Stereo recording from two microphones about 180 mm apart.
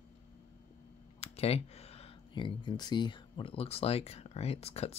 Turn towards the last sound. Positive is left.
turn(degrees=35)  # may be behind; listen again after turning